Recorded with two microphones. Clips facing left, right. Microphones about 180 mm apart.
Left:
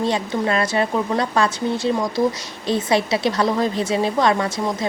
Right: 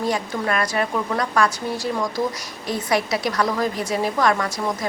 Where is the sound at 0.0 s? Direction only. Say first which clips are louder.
Left 3 dB; 25° left (ahead or behind).